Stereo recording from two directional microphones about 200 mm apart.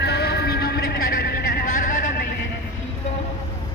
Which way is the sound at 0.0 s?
55° left (ahead or behind).